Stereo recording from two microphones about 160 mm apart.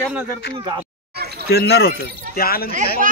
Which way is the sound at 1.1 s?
85° right.